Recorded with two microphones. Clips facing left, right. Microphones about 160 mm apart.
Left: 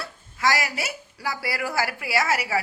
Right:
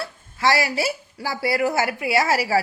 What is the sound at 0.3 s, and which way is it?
A woman's voice, 30° right (ahead or behind).